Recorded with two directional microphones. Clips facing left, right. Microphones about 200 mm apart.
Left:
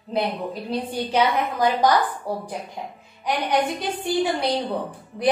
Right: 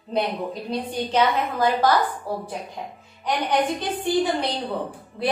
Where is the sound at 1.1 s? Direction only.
15° left (ahead or behind).